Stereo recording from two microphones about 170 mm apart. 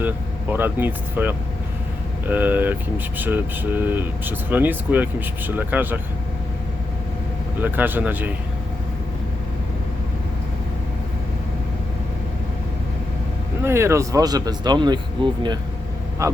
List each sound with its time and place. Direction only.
0.5 s speech: 10° right (ahead or behind)
7.6 s speech: 10° right (ahead or behind)
13.6 s speech: 15° right (ahead or behind)